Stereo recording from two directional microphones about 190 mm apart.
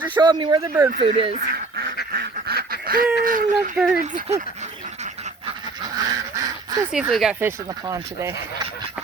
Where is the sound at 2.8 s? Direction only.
50° right (ahead or behind).